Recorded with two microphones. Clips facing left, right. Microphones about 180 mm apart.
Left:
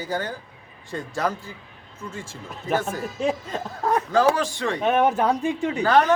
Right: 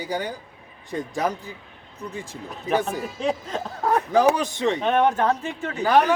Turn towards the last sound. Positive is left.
turn(degrees=-15)  # may be behind; listen again after turning